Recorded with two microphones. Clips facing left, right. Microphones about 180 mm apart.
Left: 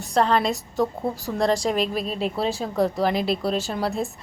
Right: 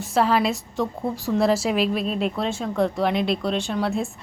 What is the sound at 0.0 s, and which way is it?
A woman's voice, 5° right (ahead or behind).